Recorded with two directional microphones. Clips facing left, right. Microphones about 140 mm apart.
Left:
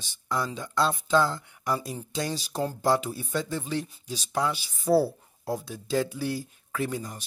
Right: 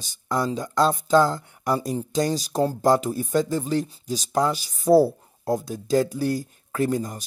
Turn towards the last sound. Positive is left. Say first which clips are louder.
# right 7 dB
turn(degrees=-45)  # may be behind; listen again after turning